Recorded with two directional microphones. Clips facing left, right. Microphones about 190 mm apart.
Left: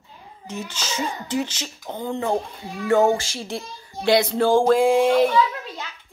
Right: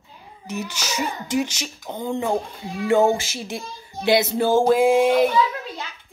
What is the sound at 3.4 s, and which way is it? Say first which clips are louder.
Speech: even; 20° right (ahead or behind).